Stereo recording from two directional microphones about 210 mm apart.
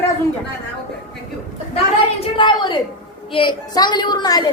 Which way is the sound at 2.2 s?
20° left (ahead or behind).